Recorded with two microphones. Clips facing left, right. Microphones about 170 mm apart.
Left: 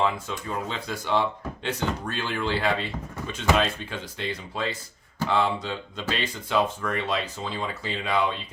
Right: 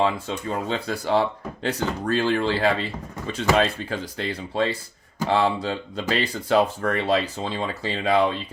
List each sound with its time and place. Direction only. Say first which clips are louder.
0.0 s speech: right 3 dB; 30° right (ahead or behind)